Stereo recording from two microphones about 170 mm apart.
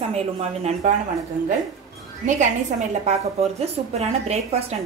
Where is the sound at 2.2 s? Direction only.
45° right (ahead or behind).